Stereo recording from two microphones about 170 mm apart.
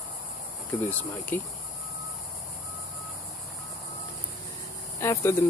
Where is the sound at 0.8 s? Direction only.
10° left (ahead or behind).